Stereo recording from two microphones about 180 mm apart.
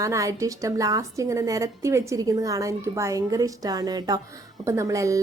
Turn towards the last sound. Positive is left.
turn(degrees=-15)  # may be behind; listen again after turning